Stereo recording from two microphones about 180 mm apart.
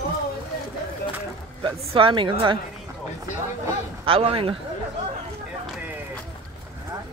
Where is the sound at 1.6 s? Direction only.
30° right (ahead or behind).